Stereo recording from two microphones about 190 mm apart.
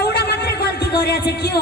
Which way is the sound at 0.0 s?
60° left (ahead or behind).